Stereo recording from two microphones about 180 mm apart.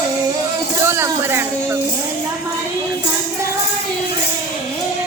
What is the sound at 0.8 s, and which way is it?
Speech, 15° right (ahead or behind).